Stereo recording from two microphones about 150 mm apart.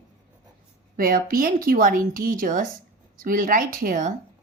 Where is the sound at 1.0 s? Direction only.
75° right (ahead or behind).